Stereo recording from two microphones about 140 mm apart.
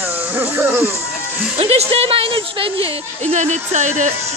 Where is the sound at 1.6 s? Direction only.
45° right (ahead or behind).